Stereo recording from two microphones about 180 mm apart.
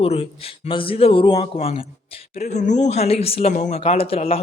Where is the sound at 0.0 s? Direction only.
35° left (ahead or behind).